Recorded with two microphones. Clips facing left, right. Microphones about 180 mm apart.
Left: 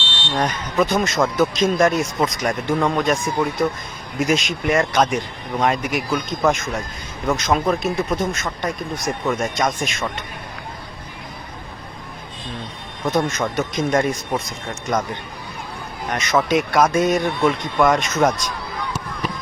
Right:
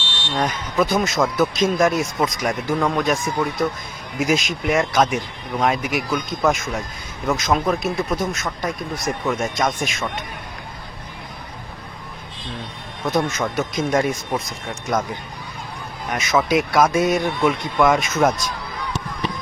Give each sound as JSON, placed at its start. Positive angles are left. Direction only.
{"t": 0.3, "sound": "speech", "side_deg": 0}
{"t": 13.1, "sound": "speech", "side_deg": 0}
{"t": 16.0, "sound": "speech", "side_deg": -5}